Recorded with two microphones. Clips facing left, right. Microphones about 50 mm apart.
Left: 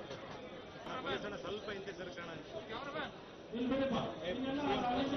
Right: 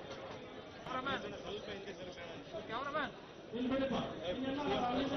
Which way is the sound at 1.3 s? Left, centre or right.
Left.